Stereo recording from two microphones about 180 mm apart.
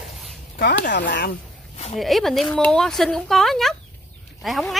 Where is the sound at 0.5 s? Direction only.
70° left (ahead or behind).